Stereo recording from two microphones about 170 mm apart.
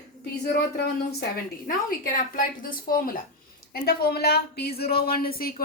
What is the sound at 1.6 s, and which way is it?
Speech, 55° left (ahead or behind).